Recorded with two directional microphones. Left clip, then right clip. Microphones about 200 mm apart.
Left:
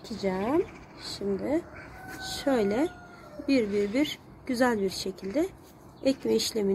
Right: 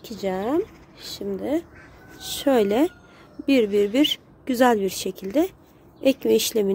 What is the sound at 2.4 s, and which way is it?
Speech, 55° right (ahead or behind).